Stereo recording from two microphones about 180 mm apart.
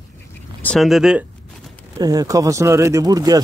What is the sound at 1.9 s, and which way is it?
Speech, 20° right (ahead or behind).